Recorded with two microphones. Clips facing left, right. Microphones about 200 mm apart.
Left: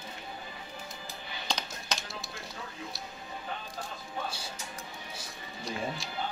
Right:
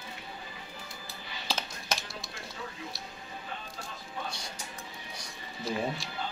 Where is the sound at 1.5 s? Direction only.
5° right (ahead or behind).